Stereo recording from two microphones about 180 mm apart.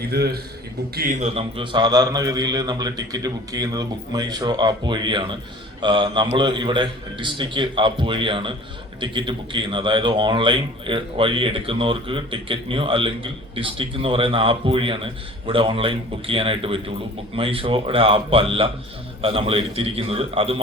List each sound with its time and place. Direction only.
0.1 s a man's voice: 60° right (ahead or behind)
1.2 s a man's voice: 30° right (ahead or behind)